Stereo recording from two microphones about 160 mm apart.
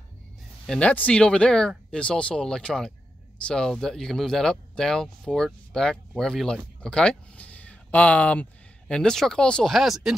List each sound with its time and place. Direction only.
0.7 s speech: 5° left (ahead or behind)